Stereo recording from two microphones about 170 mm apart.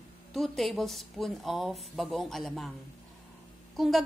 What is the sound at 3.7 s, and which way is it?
Speech, centre (ahead or behind).